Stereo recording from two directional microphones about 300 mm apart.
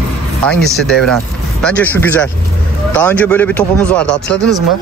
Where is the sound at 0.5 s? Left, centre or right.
Centre.